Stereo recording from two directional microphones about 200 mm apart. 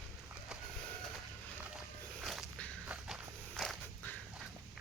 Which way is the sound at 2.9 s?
5° right (ahead or behind).